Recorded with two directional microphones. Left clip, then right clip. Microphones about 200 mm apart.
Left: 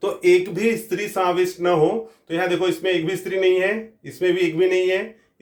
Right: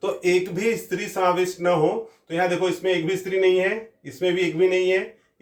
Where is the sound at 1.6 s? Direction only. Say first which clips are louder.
Left 2 dB; 45° left (ahead or behind).